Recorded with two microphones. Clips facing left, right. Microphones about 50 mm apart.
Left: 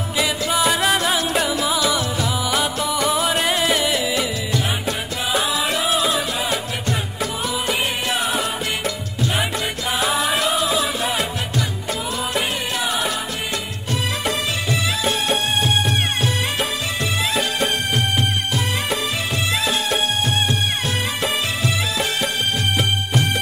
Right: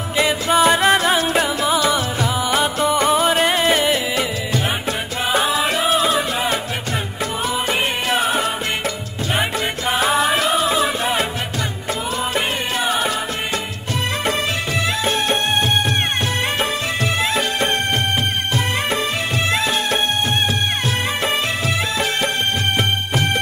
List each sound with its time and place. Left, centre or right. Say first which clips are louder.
0.2 s music: right 5 dB; right; by 2.7 s centre
2.8 s music: right 4 dB; right
3.3 s music: right 3 dB; centre
5.4 s music: right 3 dB; centre
12.4 s music: right 1 dB; centre
15.0 s music: right 1 dB; centre
17.2 s music: even; centre
19.5 s music: right 1 dB; centre